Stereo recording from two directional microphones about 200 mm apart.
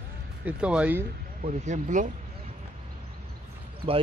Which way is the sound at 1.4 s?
35° right (ahead or behind).